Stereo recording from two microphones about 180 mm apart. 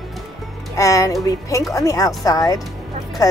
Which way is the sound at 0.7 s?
15° left (ahead or behind).